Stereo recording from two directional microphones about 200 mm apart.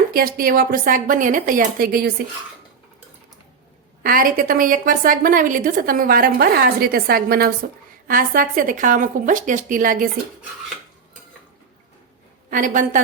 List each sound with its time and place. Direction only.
0.1 s a woman's voice: 45° right (ahead or behind)
4.0 s a woman's voice: 45° right (ahead or behind)
12.5 s a woman's voice: 40° right (ahead or behind)